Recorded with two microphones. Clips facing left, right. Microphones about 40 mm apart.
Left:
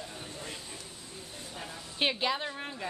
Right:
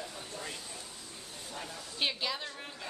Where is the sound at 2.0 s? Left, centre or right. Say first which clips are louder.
Left 5 dB; left.